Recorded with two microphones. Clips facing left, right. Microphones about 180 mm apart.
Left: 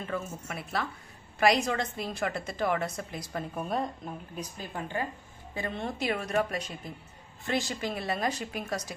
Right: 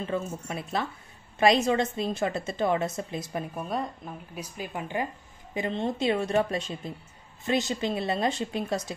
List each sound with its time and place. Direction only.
0.0 s a woman's voice: 20° right (ahead or behind)
3.5 s a woman's voice: centre (ahead or behind); by 8.9 s 25° right (ahead or behind)